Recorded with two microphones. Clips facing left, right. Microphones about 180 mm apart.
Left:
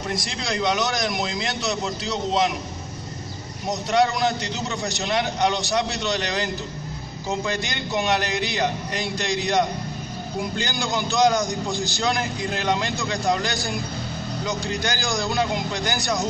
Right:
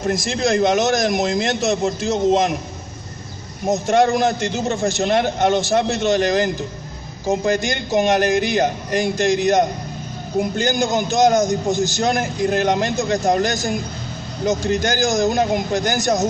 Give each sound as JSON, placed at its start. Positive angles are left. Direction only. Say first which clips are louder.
{"t": 0.0, "sound": "a man's voice", "louder": "right 9 dB", "side_deg": -50}
{"t": 3.6, "sound": "a man's voice", "louder": "right 5 dB", "side_deg": -45}